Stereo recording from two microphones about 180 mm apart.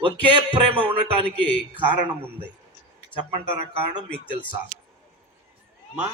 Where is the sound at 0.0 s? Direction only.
30° right (ahead or behind).